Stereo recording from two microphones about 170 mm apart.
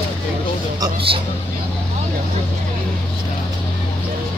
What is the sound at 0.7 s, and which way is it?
Speech, 30° right (ahead or behind).